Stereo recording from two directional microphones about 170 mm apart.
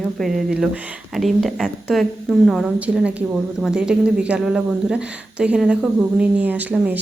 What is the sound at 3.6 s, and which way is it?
Speech, 5° right (ahead or behind).